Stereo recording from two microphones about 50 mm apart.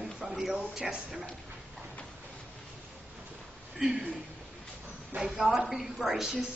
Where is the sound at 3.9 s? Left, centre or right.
Right.